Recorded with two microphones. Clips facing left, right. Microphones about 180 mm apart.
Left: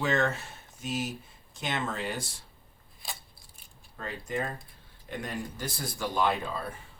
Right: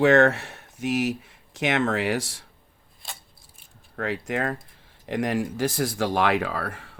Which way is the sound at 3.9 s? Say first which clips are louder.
Right 7 dB; 85° right.